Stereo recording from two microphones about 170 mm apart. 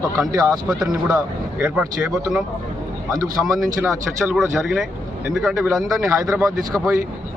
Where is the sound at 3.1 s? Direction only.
20° right (ahead or behind).